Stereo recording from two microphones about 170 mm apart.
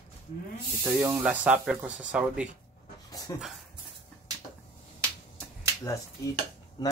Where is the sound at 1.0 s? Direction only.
10° right (ahead or behind).